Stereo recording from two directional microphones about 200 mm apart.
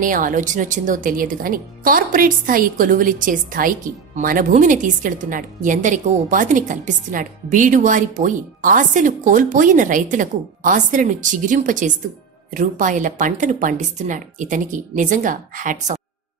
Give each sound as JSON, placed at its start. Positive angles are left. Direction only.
{"t": 0.0, "sound": "speech", "side_deg": -40}